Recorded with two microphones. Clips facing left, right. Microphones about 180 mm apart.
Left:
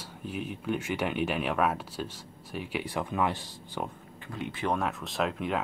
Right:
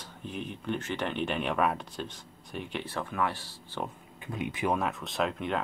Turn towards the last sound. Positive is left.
turn(degrees=0)  # may be behind; listen again after turning